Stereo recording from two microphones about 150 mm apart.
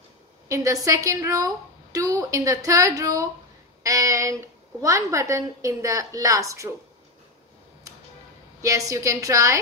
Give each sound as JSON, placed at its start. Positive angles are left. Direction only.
{"t": 0.5, "sound": "a woman's voice", "side_deg": -20}
{"t": 8.6, "sound": "a woman's voice", "side_deg": -20}